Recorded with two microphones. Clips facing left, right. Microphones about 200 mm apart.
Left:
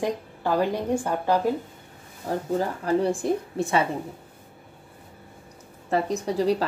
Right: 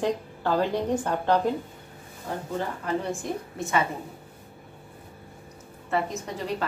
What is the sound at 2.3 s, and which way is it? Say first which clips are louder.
A woman's voice: left 5 dB; 40° left (ahead or behind).